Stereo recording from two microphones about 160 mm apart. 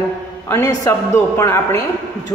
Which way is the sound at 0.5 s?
20° left (ahead or behind).